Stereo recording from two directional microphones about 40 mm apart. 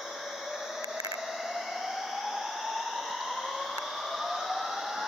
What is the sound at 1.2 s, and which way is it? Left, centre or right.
Hair dryer, centre.